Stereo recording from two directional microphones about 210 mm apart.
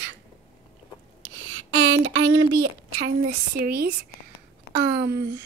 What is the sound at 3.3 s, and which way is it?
Speech, 45° right (ahead or behind).